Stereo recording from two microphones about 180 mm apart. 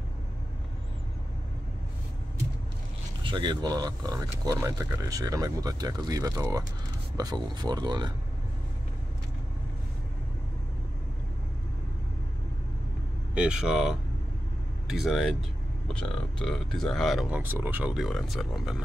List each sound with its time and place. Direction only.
3.3 s speech: 25° right (ahead or behind)
13.3 s speech: 5° right (ahead or behind)
17.4 s speech: 10° right (ahead or behind)